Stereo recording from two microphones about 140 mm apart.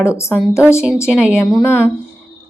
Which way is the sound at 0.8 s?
5° right (ahead or behind).